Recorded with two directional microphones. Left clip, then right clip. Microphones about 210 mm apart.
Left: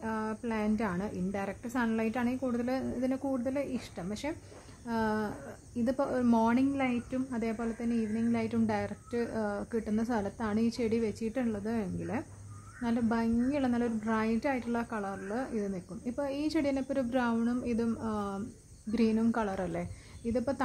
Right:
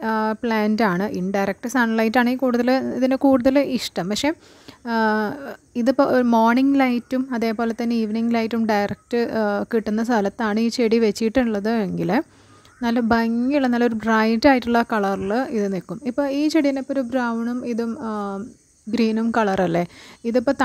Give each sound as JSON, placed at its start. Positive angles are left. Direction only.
{"t": 0.0, "sound": "a woman's voice", "side_deg": -40}